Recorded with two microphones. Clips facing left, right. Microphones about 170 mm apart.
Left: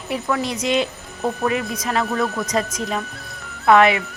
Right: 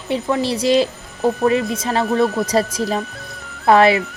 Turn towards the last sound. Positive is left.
turn(degrees=-35)  # may be behind; listen again after turning